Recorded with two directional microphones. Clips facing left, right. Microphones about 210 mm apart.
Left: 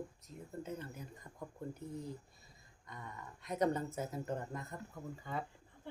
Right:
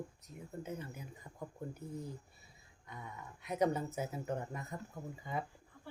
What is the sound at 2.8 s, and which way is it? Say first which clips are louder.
Speech: right 1 dB; 5° right (ahead or behind).